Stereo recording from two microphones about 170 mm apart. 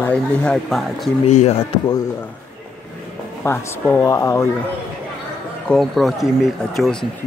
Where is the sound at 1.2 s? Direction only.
40° left (ahead or behind).